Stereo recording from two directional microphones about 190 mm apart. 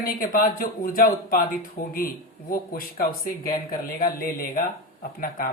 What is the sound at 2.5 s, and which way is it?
A woman's voice, 50° left (ahead or behind).